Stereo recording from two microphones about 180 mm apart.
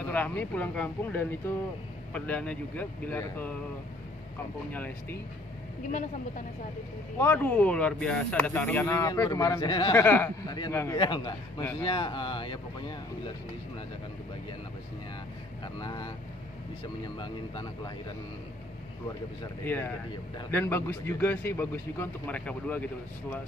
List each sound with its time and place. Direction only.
0.0 s speech: 10° left (ahead or behind)
4.7 s speech: 10° left (ahead or behind)
5.9 s a woman's voice: 45° left (ahead or behind)
7.2 s speech: 10° left (ahead or behind)
9.9 s speech: 10° left (ahead or behind)
11.0 s speech: 25° left (ahead or behind)
15.6 s speech: 25° left (ahead or behind)
19.6 s speech: 10° left (ahead or behind)